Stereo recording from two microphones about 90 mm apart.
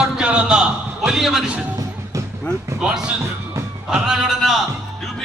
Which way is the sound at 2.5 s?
15° left (ahead or behind).